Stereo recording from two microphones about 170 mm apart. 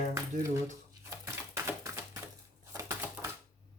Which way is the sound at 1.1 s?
15° right (ahead or behind).